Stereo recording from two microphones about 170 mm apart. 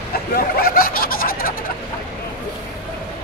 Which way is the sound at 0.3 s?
60° left (ahead or behind).